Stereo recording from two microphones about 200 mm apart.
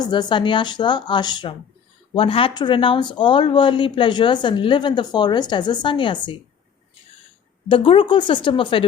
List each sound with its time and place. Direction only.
0.0 s speech: 20° left (ahead or behind)
7.7 s speech: 25° left (ahead or behind)